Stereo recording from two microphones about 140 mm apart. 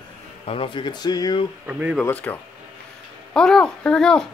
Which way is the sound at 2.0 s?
10° left (ahead or behind).